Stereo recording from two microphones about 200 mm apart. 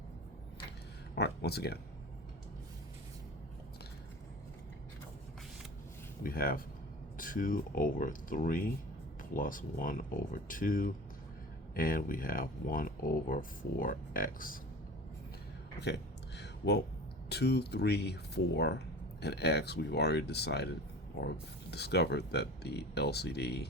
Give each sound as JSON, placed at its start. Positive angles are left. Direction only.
{"t": 1.1, "sound": "speech", "side_deg": 55}
{"t": 6.2, "sound": "speech", "side_deg": 45}
{"t": 16.4, "sound": "a sound", "side_deg": 60}
{"t": 17.2, "sound": "speech", "side_deg": 55}